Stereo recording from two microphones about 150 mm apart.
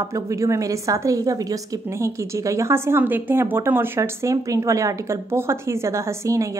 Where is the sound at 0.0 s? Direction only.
20° right (ahead or behind).